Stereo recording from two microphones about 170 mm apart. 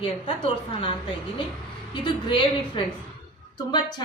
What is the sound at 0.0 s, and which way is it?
A woman's voice, 35° left (ahead or behind).